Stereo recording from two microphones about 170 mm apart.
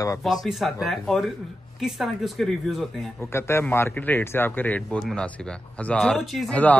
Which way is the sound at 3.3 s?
15° left (ahead or behind).